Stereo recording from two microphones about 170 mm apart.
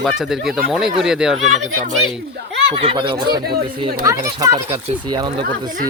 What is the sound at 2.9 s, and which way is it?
Speech, 30° right (ahead or behind).